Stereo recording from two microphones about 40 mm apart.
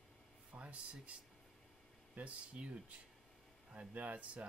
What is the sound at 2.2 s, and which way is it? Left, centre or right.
Speech, right.